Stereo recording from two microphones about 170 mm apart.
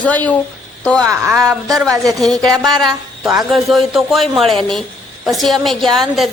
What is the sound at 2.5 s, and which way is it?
Speech, 25° right (ahead or behind).